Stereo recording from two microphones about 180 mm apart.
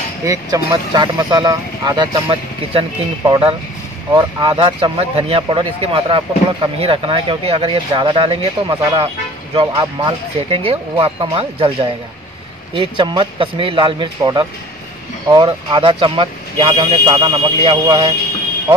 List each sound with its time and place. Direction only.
0.2 s speech: 20° right (ahead or behind)